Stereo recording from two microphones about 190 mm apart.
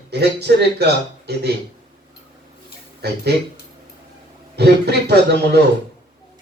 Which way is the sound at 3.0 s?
60° right (ahead or behind).